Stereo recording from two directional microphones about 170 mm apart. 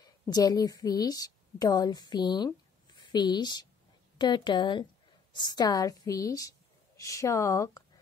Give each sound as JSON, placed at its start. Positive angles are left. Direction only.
{"t": 0.0, "sound": "a woman's voice", "side_deg": 20}